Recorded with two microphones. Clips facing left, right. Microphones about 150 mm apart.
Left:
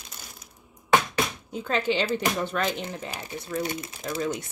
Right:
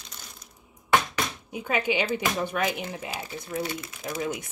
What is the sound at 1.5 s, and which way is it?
Speech, 10° right (ahead or behind).